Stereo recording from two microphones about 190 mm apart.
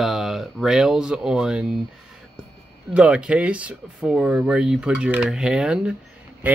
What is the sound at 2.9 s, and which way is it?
Speech, 5° right (ahead or behind).